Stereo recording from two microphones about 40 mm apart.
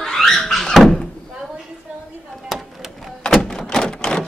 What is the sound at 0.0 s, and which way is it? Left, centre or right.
Door, centre.